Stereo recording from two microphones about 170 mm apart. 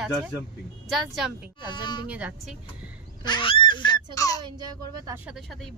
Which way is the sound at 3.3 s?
30° left (ahead or behind).